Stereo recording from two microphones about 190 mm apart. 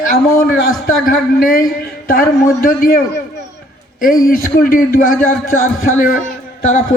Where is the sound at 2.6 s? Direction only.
45° left (ahead or behind).